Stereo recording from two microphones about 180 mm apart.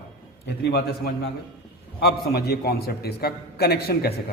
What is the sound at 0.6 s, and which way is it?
A man's voice, 60° left (ahead or behind).